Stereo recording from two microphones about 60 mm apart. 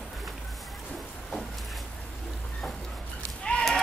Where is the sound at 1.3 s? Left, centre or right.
Centre.